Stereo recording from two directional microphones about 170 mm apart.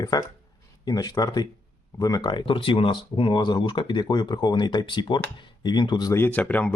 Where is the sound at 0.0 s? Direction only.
25° left (ahead or behind).